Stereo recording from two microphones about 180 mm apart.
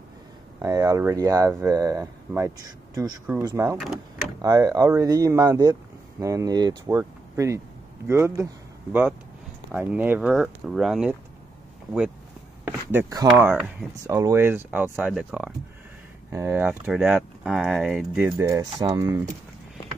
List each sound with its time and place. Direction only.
0.6 s speech: 20° right (ahead or behind)
3.8 s power windows: centre (ahead or behind)
4.4 s speech: 20° right (ahead or behind)
9.7 s speech: 10° right (ahead or behind)
12.6 s speech: 15° right (ahead or behind)
16.3 s speech: 15° right (ahead or behind)